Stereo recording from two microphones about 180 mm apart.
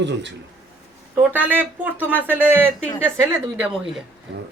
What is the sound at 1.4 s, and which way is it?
Speech, 10° right (ahead or behind).